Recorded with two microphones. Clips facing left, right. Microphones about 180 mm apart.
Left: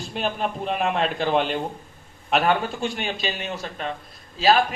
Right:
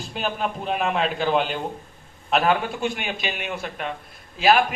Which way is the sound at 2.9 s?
15° right (ahead or behind).